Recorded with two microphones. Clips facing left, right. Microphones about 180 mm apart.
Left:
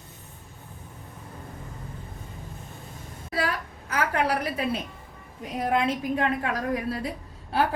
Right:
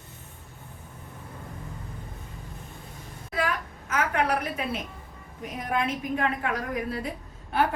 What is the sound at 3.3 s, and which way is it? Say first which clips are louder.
A woman's voice: even; 35° left (ahead or behind).